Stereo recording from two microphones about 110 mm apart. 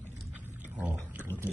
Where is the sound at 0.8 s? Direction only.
15° right (ahead or behind).